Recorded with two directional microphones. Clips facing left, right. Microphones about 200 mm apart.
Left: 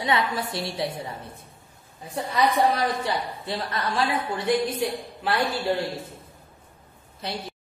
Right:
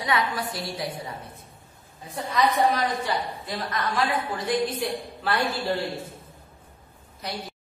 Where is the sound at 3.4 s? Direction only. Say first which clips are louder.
Left 2 dB; 30° left (ahead or behind).